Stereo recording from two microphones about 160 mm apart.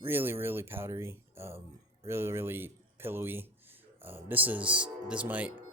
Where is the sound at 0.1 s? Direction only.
15° right (ahead or behind).